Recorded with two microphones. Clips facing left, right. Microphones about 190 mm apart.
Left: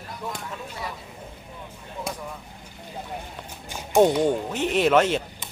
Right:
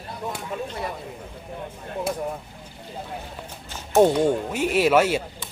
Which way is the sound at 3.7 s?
10° left (ahead or behind).